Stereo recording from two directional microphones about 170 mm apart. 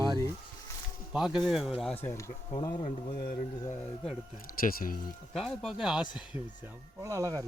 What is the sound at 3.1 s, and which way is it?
Speech, 60° left (ahead or behind).